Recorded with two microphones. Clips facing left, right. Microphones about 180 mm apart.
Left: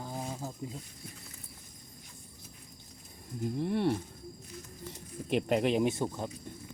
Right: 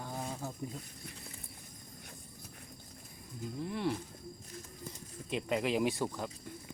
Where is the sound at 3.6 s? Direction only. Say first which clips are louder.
Left 6 dB; 60° left (ahead or behind).